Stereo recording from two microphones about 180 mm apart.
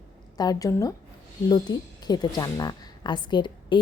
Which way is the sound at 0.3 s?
20° left (ahead or behind).